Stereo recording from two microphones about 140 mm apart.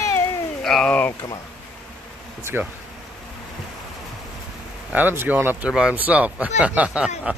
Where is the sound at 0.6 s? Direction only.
5° left (ahead or behind).